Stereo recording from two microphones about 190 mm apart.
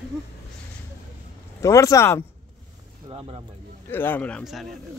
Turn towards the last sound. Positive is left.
turn(degrees=0)  # may be behind; listen again after turning